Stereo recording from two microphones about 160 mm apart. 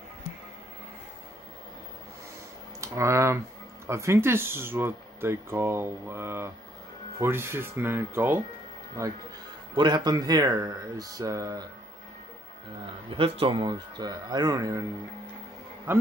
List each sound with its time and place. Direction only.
2.8 s speech: 20° right (ahead or behind)
13.1 s speech: 35° right (ahead or behind)
15.9 s speech: 15° right (ahead or behind)